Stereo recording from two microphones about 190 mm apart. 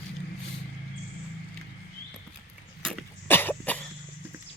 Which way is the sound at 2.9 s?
10° left (ahead or behind).